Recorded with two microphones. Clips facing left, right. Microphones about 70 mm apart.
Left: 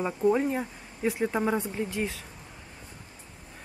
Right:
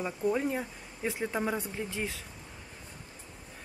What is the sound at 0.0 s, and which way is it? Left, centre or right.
Speech, centre.